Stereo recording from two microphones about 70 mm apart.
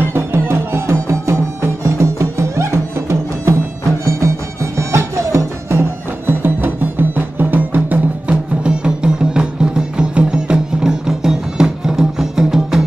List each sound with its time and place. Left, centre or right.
0.1 s music: right
8.6 s music: centre